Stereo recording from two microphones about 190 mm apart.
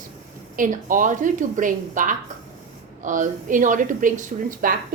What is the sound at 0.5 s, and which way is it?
Speech, 45° right (ahead or behind).